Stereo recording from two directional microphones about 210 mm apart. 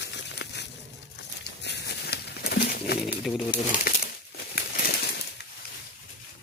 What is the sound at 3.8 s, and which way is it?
Crumpling, 40° left (ahead or behind).